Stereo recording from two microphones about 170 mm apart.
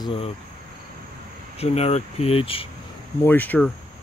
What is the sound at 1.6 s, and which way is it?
Speech, 40° left (ahead or behind).